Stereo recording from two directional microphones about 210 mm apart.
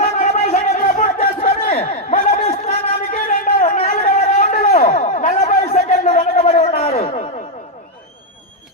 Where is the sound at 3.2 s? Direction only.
40° left (ahead or behind).